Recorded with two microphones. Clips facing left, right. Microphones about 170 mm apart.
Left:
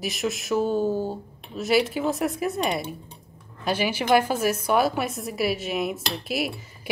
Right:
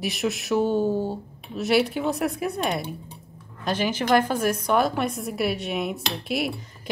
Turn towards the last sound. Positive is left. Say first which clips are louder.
# right 1 dB
turn(degrees=0)  # may be behind; listen again after turning